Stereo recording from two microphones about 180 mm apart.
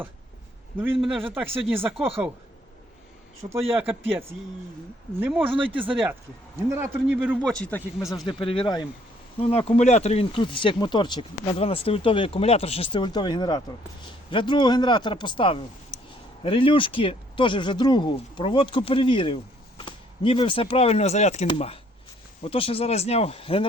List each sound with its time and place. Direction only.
0.9 s speech: centre (ahead or behind)
1.7 s a man's voice: 10° right (ahead or behind)
3.5 s a man's voice: 10° right (ahead or behind)
5.7 s speech: 30° right (ahead or behind)
6.7 s a man's voice: 10° right (ahead or behind)
7.4 s speech: 5° left (ahead or behind)
8.3 s speech: 30° left (ahead or behind)